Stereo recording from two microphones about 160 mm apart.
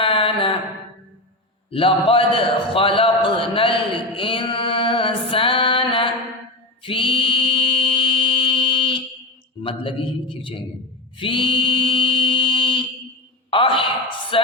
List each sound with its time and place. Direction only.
0.0 s mantra: 35° left (ahead or behind)
1.7 s a man's voice: 35° left (ahead or behind)
6.8 s mantra: 35° left (ahead or behind)
9.6 s a man's voice: 30° left (ahead or behind)
11.2 s mantra: 30° left (ahead or behind)
13.5 s a man's voice: 35° left (ahead or behind)